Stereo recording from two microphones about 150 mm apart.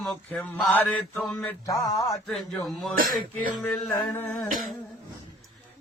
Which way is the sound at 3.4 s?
10° left (ahead or behind).